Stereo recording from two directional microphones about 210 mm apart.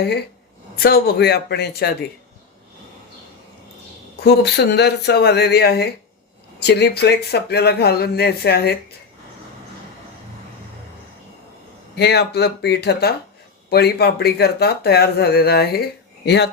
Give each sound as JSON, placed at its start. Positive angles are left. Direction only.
{"t": 0.0, "sound": "speech", "side_deg": 50}
{"t": 4.2, "sound": "speech", "side_deg": 50}
{"t": 11.9, "sound": "speech", "side_deg": 50}